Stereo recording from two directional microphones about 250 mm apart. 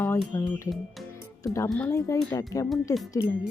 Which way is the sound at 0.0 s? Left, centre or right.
Centre.